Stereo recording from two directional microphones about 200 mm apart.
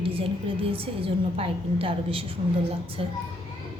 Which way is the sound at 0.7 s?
30° right (ahead or behind).